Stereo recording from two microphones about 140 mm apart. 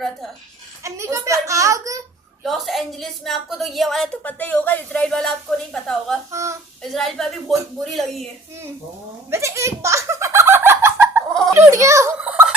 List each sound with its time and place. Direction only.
0.9 s a child's voice: 20° right (ahead or behind)
2.4 s a woman's voice: centre (ahead or behind)
4.2 s speech: 10° left (ahead or behind)
6.3 s a child's voice: 20° right (ahead or behind)
6.8 s a woman's voice: centre (ahead or behind)
9.3 s giggle: 20° right (ahead or behind)
11.5 s a sound: 20° right (ahead or behind)
12.2 s fowl: 10° right (ahead or behind)